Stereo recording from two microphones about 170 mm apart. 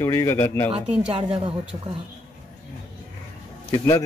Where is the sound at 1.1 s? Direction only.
35° right (ahead or behind).